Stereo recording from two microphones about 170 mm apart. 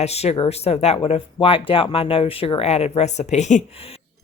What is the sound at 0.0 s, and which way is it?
Speech, 40° left (ahead or behind).